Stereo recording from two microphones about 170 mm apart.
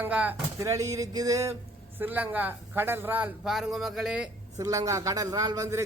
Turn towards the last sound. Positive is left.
turn(degrees=-20)  # may be behind; listen again after turning